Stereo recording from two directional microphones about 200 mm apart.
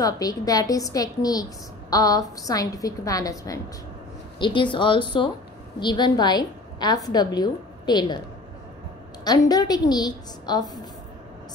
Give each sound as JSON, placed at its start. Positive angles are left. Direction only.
{"t": 0.0, "sound": "a woman's voice", "side_deg": 20}
{"t": 9.2, "sound": "a woman's voice", "side_deg": 20}